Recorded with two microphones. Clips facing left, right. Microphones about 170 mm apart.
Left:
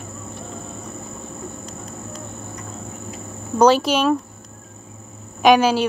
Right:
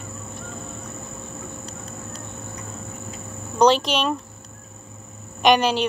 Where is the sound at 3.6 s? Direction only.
5° left (ahead or behind).